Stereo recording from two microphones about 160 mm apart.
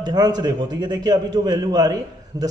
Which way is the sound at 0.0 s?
25° right (ahead or behind).